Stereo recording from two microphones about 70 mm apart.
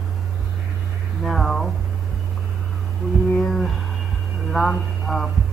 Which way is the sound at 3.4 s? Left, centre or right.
Centre.